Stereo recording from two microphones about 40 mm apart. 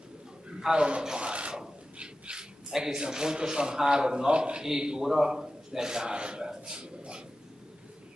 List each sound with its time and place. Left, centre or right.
0.5 s speech: right
1.5 s rub: right
2.7 s a man's voice: centre